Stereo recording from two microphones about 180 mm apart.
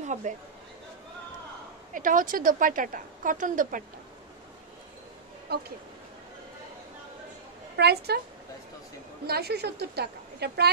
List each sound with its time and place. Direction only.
0.0 s chatter: 40° right (ahead or behind)
2.0 s a woman's voice: 50° right (ahead or behind)
5.5 s a woman's voice: 60° right (ahead or behind)
7.7 s a woman's voice: 65° right (ahead or behind)
9.2 s a woman's voice: 60° right (ahead or behind)